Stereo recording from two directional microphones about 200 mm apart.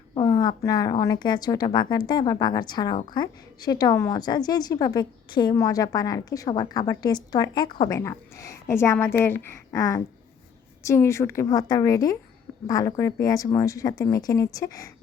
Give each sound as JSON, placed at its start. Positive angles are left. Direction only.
{"t": 0.1, "sound": "a woman's voice", "side_deg": 20}